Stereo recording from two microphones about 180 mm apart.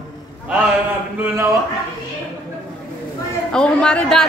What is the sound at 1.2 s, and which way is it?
Speech, 15° right (ahead or behind).